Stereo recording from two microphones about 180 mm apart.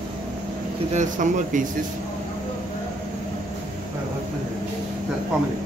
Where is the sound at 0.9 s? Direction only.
45° right (ahead or behind).